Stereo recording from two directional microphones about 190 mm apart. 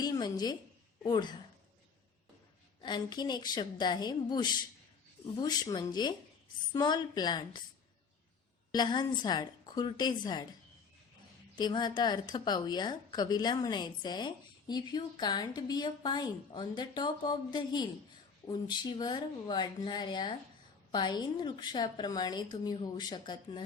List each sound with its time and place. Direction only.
0.0 s a sound: 20° left (ahead or behind)
1.0 s a woman's voice: 25° left (ahead or behind)
2.8 s a woman's voice: 20° left (ahead or behind)
8.7 s a woman's voice: 20° left (ahead or behind)
11.5 s a woman's voice: 25° left (ahead or behind)